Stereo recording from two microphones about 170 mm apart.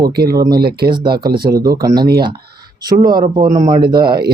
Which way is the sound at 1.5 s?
20° right (ahead or behind).